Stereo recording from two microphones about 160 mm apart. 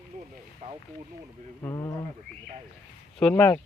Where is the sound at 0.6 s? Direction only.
50° right (ahead or behind).